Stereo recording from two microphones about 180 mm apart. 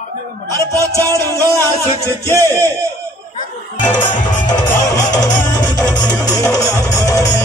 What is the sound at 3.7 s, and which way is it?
Speech, 45° left (ahead or behind).